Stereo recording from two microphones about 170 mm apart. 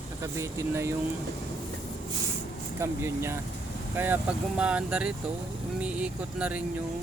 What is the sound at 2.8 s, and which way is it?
Speech, 15° right (ahead or behind).